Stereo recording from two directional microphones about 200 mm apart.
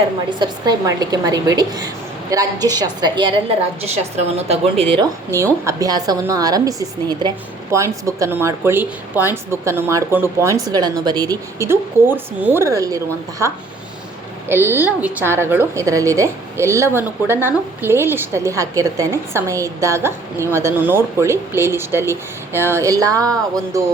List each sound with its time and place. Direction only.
0.3 s a woman's voice: 20° right (ahead or behind)
3.8 s a woman's voice: 30° right (ahead or behind); by 13.0 s 15° right (ahead or behind)
14.4 s a woman's voice: 10° right (ahead or behind)